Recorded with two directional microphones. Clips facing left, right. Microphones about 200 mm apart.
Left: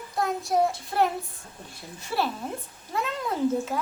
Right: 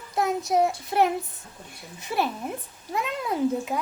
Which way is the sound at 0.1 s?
20° right (ahead or behind).